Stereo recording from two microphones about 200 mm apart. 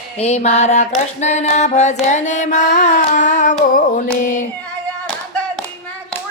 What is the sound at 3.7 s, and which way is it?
Music, 45° left (ahead or behind).